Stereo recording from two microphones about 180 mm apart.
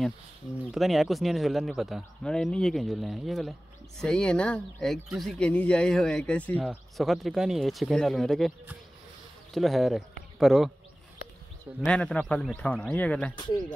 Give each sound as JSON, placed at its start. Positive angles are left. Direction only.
{"t": 0.7, "sound": "speech", "side_deg": 0}
{"t": 11.8, "sound": "a man's voice", "side_deg": 5}
{"t": 13.4, "sound": "speech", "side_deg": 25}